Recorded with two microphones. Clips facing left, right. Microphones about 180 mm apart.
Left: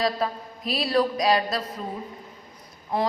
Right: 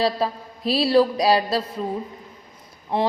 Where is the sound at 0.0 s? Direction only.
30° right (ahead or behind).